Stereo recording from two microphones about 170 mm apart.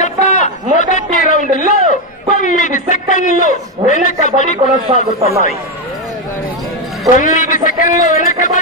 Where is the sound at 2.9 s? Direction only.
45° left (ahead or behind).